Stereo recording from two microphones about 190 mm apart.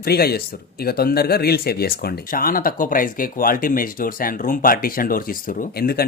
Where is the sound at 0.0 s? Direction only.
55° left (ahead or behind).